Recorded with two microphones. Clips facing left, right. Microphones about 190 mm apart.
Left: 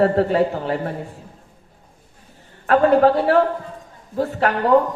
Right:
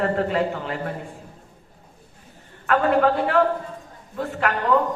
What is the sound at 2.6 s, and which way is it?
Speech, 35° left (ahead or behind).